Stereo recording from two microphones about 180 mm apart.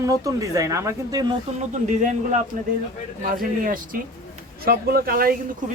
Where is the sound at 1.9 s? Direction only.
40° right (ahead or behind).